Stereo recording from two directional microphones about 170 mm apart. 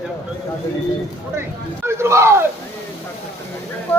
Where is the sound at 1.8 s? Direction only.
15° right (ahead or behind).